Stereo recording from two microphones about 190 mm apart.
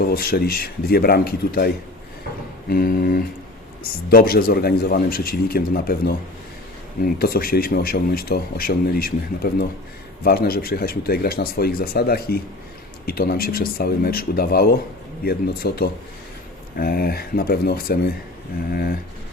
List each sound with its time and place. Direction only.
0.0 s a man's voice: 50° left (ahead or behind)